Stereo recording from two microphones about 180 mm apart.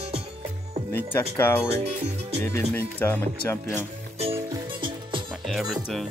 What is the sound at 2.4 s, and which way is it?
Speech, 15° left (ahead or behind).